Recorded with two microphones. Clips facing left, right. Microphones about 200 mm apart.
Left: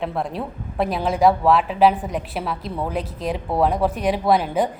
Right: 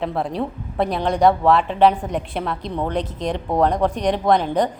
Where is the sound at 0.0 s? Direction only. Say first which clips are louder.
Right 2 dB; centre (ahead or behind).